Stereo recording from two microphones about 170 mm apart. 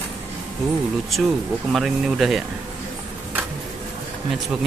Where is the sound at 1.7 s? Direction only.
Centre (ahead or behind).